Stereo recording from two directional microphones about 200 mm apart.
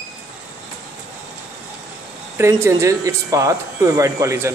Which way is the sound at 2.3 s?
15° right (ahead or behind).